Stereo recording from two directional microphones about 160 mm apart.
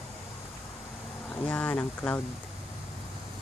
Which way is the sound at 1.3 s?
10° left (ahead or behind).